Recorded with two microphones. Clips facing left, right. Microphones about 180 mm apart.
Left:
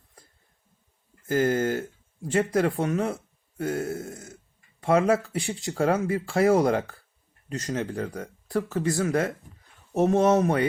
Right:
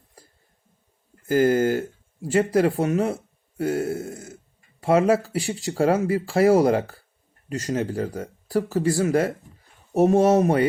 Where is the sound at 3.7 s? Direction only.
30° right (ahead or behind).